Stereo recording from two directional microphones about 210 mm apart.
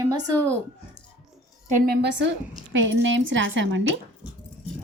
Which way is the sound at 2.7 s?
65° right (ahead or behind).